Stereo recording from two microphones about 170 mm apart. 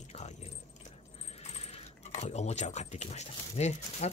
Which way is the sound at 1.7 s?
40° left (ahead or behind).